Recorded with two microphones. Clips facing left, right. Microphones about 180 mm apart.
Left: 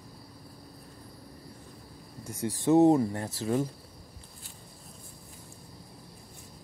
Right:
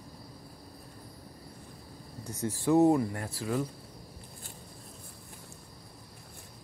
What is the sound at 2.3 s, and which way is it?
Speech, 15° left (ahead or behind).